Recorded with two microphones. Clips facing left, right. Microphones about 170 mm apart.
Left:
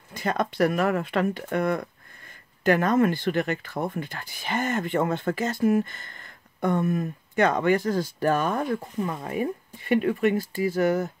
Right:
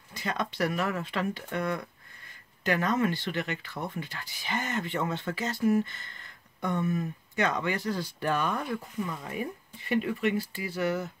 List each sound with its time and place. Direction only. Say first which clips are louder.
0.1 s speech: left 6 dB; 50° left (ahead or behind)